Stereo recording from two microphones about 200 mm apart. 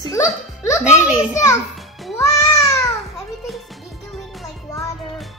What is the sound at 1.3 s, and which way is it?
Speech, 15° left (ahead or behind).